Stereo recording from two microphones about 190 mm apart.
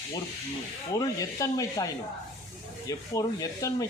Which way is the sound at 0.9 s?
20° left (ahead or behind).